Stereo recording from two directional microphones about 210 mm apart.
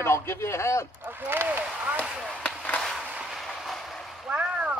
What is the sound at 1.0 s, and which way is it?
Speech, 10° right (ahead or behind).